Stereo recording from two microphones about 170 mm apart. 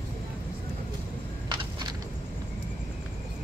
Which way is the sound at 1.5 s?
25° right (ahead or behind).